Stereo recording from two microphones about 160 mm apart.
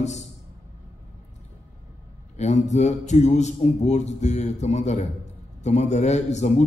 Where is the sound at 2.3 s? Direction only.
45° left (ahead or behind).